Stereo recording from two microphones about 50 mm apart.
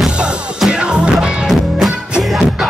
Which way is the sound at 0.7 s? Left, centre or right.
Centre.